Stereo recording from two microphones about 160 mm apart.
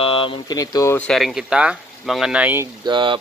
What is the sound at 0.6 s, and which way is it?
Speech, 20° left (ahead or behind).